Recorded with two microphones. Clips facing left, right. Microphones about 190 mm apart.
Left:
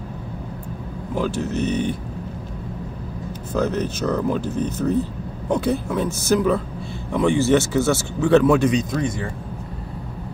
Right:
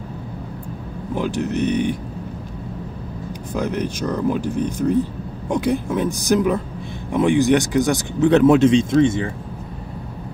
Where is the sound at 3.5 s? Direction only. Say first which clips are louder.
Left 1 dB; 15° right (ahead or behind).